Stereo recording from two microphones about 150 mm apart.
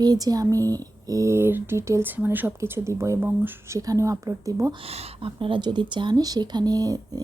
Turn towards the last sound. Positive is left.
turn(degrees=-25)  # may be behind; listen again after turning